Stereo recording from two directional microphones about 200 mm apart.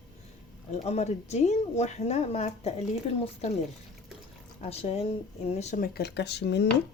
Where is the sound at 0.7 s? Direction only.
35° left (ahead or behind).